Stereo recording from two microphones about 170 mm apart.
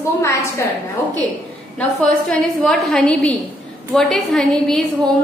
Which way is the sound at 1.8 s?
5° left (ahead or behind).